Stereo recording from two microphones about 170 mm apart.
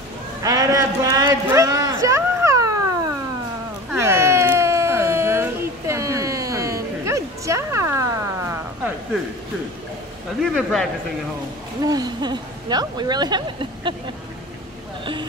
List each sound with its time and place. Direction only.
0.4 s a sound: 20° right (ahead or behind)
10.4 s speech: centre (ahead or behind)
11.8 s speech: 25° right (ahead or behind)